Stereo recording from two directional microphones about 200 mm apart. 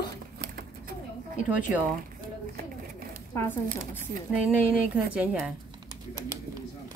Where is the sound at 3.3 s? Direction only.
10° left (ahead or behind).